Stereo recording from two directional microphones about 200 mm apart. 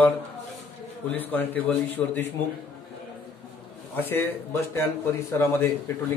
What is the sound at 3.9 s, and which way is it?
Speech, 10° left (ahead or behind).